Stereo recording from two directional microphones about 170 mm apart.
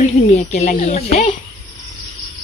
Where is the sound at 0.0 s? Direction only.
45° left (ahead or behind).